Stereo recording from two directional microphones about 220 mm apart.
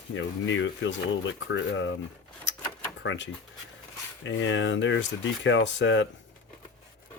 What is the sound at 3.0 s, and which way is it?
Speech, 55° left (ahead or behind).